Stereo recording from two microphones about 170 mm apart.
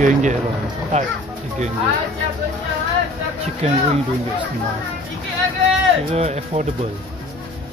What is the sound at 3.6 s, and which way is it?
Speech, 35° right (ahead or behind).